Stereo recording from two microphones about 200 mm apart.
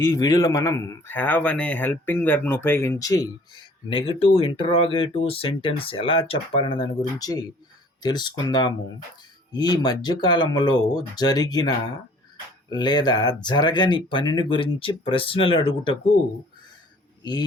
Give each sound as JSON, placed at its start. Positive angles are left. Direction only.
{"t": 0.0, "sound": "a man's voice", "side_deg": 15}
{"t": 12.7, "sound": "a man's voice", "side_deg": 20}